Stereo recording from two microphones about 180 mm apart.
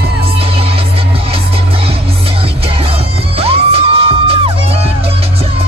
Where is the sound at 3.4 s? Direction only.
30° right (ahead or behind).